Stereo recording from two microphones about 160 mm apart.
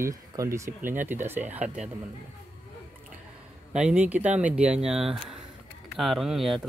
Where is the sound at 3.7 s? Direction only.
5° right (ahead or behind).